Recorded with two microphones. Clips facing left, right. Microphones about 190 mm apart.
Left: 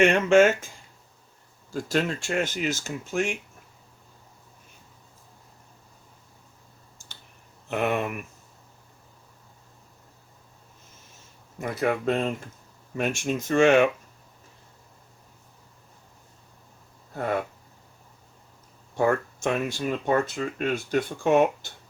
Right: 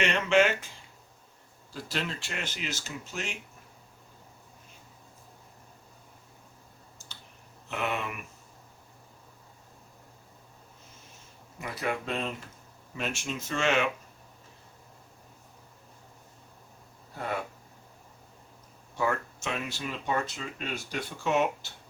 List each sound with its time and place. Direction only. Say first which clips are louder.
0.0 s speech: left 7 dB; 50° left (ahead or behind)
1.7 s speech: left 9 dB; 45° left (ahead or behind)
7.7 s speech: left 7 dB; 50° left (ahead or behind)
11.6 s speech: left 8 dB; 50° left (ahead or behind)
18.9 s speech: left 7 dB; 50° left (ahead or behind)